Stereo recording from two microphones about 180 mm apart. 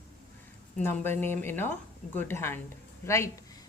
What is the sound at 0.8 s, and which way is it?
Speech, 10° left (ahead or behind).